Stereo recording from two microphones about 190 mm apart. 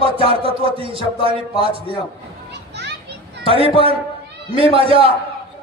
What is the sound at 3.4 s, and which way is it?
A man's voice, 30° right (ahead or behind).